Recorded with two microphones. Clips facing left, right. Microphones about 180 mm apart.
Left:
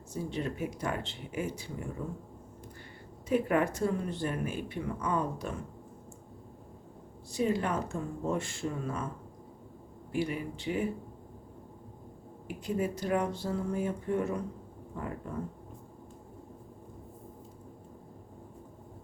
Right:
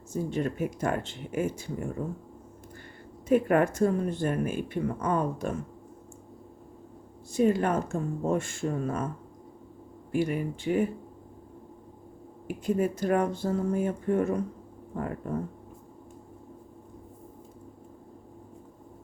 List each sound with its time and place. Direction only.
0.1 s speech: 50° right (ahead or behind)
3.2 s speech: 50° right (ahead or behind)
7.3 s speech: 50° right (ahead or behind)
10.1 s speech: 50° right (ahead or behind)
12.5 s speech: 50° right (ahead or behind)